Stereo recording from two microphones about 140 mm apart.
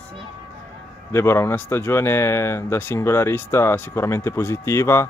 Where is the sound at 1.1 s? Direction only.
20° left (ahead or behind).